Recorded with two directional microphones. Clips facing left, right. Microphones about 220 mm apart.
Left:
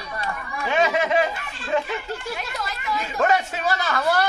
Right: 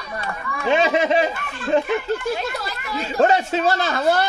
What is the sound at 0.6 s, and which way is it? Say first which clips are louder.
Speech: right 4 dB; 25° right (ahead or behind).